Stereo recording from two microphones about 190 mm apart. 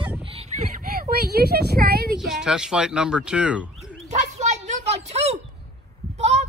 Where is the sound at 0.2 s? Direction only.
30° right (ahead or behind).